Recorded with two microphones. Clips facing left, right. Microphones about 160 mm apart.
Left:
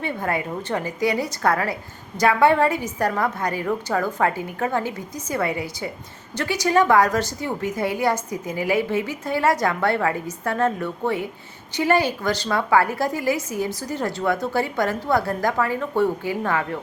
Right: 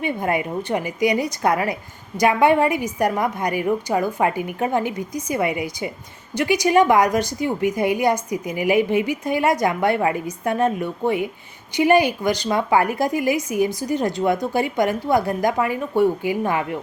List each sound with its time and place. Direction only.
0.0 s a woman's voice: 15° right (ahead or behind)